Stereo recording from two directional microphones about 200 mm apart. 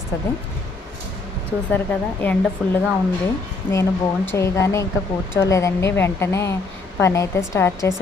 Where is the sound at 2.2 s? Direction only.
10° left (ahead or behind).